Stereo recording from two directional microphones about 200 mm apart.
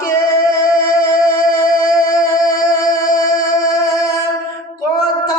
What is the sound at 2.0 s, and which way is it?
Music, 15° left (ahead or behind).